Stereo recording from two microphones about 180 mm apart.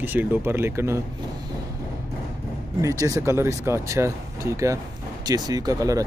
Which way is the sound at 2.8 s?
20° right (ahead or behind).